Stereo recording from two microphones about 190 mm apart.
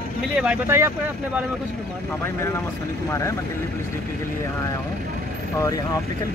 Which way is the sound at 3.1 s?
15° left (ahead or behind).